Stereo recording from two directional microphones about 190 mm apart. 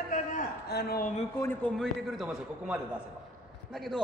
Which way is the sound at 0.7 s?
55° left (ahead or behind).